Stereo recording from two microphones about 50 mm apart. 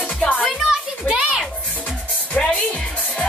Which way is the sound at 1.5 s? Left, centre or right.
Left.